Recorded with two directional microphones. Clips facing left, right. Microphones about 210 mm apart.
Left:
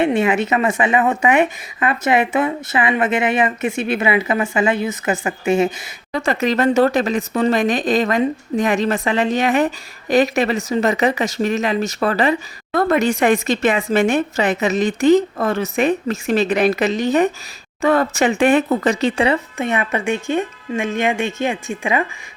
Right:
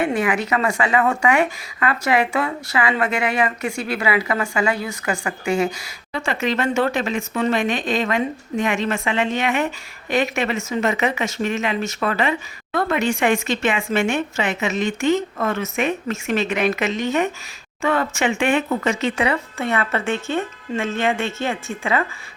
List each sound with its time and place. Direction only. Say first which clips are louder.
0.0 s a woman's voice: left 4 dB; 25° left (ahead or behind)
6.1 s speech: left 4 dB; 40° left (ahead or behind)
19.5 s speech: left 2 dB; 15° left (ahead or behind)